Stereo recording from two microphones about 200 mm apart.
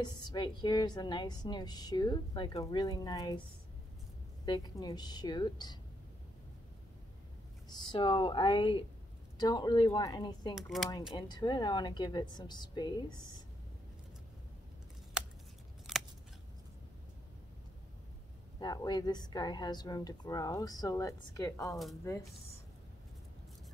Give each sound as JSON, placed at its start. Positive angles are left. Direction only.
{"t": 0.0, "sound": "a woman's voice", "side_deg": 20}
{"t": 4.5, "sound": "a woman's voice", "side_deg": 20}
{"t": 7.7, "sound": "a woman's voice", "side_deg": 20}
{"t": 10.5, "sound": "speech", "side_deg": 0}
{"t": 11.1, "sound": "a woman's voice", "side_deg": 20}
{"t": 15.9, "sound": "scissors", "side_deg": 0}
{"t": 18.6, "sound": "a woman's voice", "side_deg": 20}